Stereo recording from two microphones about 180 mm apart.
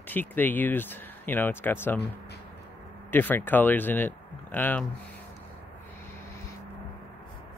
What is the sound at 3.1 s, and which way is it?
Speech, 10° left (ahead or behind).